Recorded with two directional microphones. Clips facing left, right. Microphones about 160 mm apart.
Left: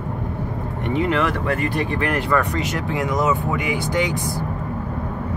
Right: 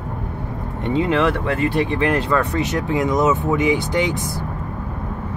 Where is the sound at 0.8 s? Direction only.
20° right (ahead or behind).